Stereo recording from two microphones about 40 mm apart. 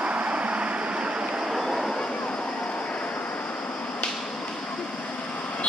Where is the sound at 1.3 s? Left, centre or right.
Centre.